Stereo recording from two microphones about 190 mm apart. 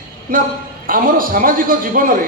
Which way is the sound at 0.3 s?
45° right (ahead or behind).